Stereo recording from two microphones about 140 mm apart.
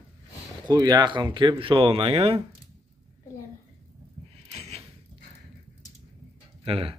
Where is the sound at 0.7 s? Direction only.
30° right (ahead or behind).